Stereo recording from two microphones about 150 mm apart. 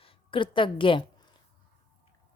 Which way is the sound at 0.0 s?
35° left (ahead or behind).